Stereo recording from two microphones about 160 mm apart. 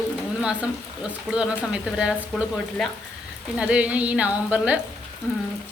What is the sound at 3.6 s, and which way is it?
Speech, 5° right (ahead or behind).